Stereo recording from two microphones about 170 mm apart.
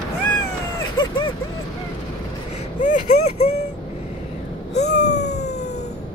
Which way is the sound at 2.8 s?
50° left (ahead or behind).